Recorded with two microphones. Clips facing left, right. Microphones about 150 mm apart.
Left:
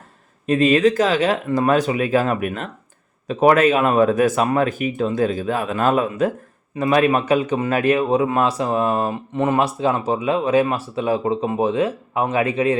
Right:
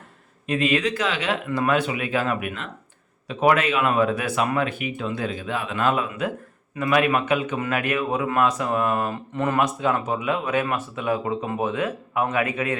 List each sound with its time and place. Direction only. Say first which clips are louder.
0.4 s a man's voice: left 7 dB; 40° left (ahead or behind)